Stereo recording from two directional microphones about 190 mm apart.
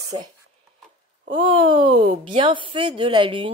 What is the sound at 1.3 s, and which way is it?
A woman's voice, 25° right (ahead or behind).